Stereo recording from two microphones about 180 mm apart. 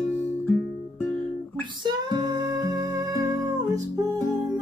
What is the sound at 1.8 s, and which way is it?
Music, 25° right (ahead or behind).